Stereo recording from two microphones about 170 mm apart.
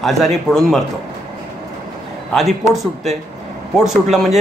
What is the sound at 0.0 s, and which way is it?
Speech, centre (ahead or behind).